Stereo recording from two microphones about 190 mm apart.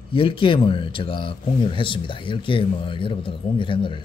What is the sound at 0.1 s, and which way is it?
Speech, 25° left (ahead or behind).